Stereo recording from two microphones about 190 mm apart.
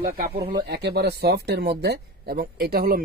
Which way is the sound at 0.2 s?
55° right (ahead or behind).